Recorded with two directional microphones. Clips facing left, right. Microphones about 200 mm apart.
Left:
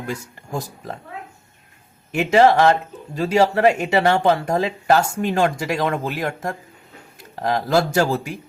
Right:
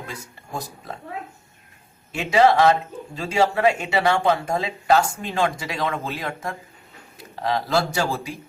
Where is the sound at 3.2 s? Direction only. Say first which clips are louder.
Left 4 dB; 40° left (ahead or behind).